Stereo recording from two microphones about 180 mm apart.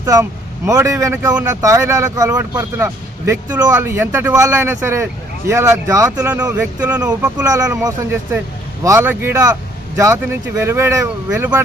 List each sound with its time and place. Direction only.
0.0 s speech: 15° right (ahead or behind)
10.6 s speech: 15° right (ahead or behind)